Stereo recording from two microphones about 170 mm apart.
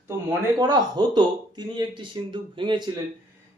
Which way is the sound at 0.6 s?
25° right (ahead or behind).